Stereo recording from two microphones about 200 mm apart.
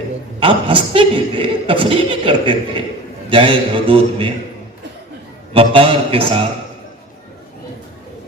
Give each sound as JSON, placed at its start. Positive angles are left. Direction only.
{"t": 0.3, "sound": "speech", "side_deg": -25}
{"t": 5.5, "sound": "speech", "side_deg": -25}